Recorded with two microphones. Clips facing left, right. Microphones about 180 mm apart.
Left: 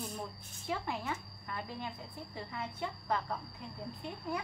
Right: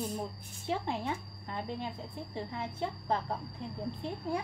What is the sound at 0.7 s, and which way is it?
A woman's voice, 30° right (ahead or behind).